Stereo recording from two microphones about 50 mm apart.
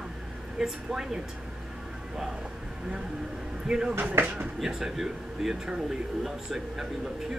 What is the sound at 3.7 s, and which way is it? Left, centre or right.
Speech, centre.